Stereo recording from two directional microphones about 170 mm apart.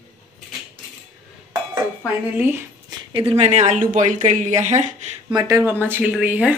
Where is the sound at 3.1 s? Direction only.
35° right (ahead or behind).